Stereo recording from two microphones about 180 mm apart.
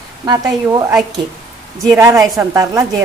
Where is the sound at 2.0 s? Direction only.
15° right (ahead or behind).